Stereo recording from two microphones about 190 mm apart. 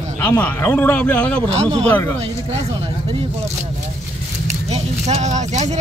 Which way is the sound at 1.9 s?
10° left (ahead or behind).